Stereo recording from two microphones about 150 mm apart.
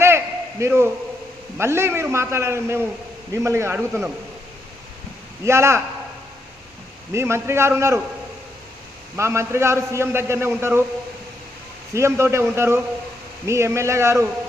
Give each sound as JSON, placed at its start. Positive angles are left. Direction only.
{"t": 0.6, "sound": "a man's voice", "side_deg": -15}
{"t": 3.8, "sound": "a man's voice", "side_deg": -5}
{"t": 5.5, "sound": "a man's voice", "side_deg": -20}
{"t": 7.1, "sound": "a man's voice", "side_deg": -15}
{"t": 9.1, "sound": "a man's voice", "side_deg": -20}
{"t": 11.9, "sound": "a man's voice", "side_deg": -20}